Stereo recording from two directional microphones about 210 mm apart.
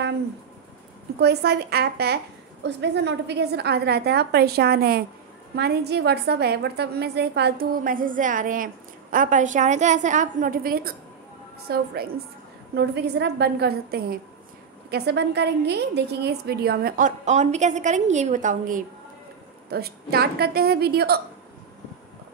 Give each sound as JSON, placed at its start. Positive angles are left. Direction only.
{"t": 1.2, "sound": "a woman's voice", "side_deg": -50}
{"t": 19.7, "sound": "a woman's voice", "side_deg": -50}